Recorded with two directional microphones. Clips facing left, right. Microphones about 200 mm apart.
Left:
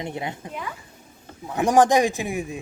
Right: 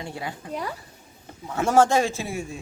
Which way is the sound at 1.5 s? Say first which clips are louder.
Left 2 dB; 15° left (ahead or behind).